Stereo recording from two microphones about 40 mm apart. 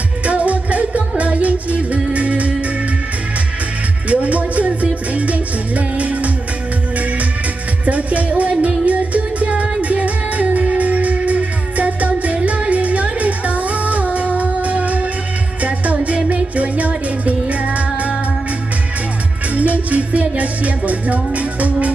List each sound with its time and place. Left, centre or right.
0.2 s music: right
4.1 s music: right
7.8 s music: right
19.5 s music: right